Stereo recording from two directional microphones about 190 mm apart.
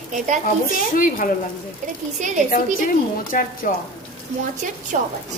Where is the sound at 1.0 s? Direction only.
45° left (ahead or behind).